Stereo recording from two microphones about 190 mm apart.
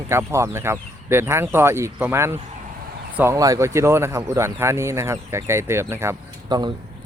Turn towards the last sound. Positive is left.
turn(degrees=-15)  # may be behind; listen again after turning